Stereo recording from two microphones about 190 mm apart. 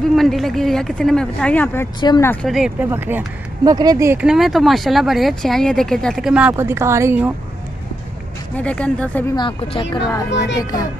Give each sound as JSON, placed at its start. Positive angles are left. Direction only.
{"t": 0.0, "sound": "speech", "side_deg": 0}
{"t": 2.0, "sound": "speech", "side_deg": 20}
{"t": 2.4, "sound": "speech", "side_deg": 0}
{"t": 8.5, "sound": "speech", "side_deg": 5}
{"t": 9.3, "sound": "speech", "side_deg": 25}
{"t": 10.3, "sound": "a child's voice", "side_deg": 65}
{"t": 10.6, "sound": "speech", "side_deg": 20}